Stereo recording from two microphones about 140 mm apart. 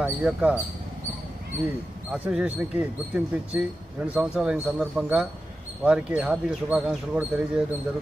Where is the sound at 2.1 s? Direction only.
10° right (ahead or behind).